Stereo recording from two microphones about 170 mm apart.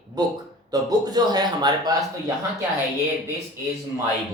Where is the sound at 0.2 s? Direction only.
25° right (ahead or behind).